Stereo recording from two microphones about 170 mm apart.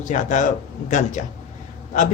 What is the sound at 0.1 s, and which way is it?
Speech, 45° left (ahead or behind).